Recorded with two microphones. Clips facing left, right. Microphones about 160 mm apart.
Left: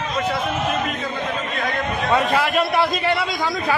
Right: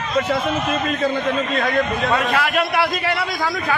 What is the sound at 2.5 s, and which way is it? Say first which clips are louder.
A man's voice: even; centre (ahead or behind).